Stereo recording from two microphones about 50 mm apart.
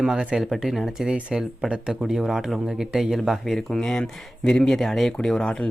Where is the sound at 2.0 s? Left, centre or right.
Centre.